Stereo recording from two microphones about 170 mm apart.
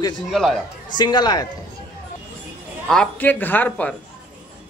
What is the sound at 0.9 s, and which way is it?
Speech, 25° left (ahead or behind).